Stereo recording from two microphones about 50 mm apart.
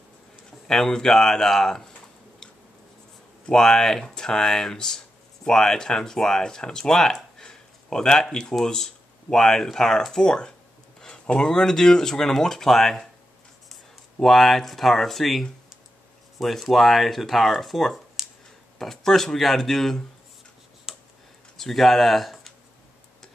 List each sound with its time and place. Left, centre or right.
0.7 s speech: centre
3.4 s speech: centre
14.2 s speech: centre
20.9 s tick: centre
21.5 s speech: centre